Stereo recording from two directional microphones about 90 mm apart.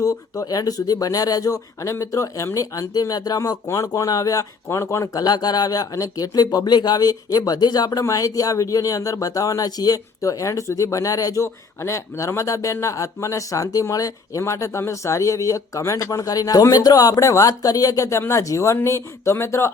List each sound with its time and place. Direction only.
0.0 s speech: 40° left (ahead or behind)
5.2 s speech: 45° left (ahead or behind)
11.4 s speech: 30° left (ahead or behind)